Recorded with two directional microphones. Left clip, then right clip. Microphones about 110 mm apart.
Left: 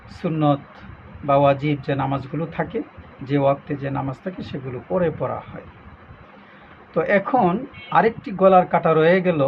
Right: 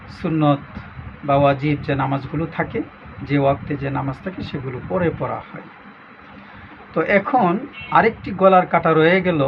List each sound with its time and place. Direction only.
0.2 s speech: 10° left (ahead or behind)
6.9 s speech: 15° left (ahead or behind)